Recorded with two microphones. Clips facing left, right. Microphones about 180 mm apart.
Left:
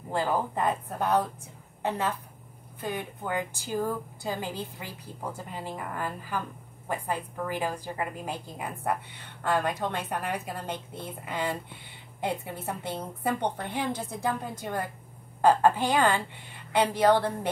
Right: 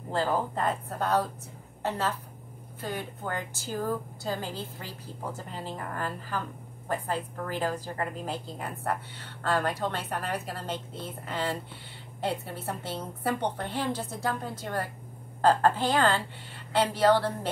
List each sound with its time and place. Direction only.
0.1 s a woman's voice: 15° left (ahead or behind)